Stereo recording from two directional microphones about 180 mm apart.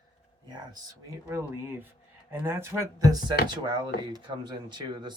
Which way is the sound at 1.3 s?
15° right (ahead or behind).